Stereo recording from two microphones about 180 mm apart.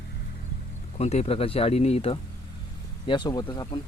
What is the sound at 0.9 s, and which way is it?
Speech, 35° left (ahead or behind).